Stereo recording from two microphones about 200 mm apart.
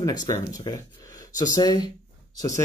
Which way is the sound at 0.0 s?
20° left (ahead or behind).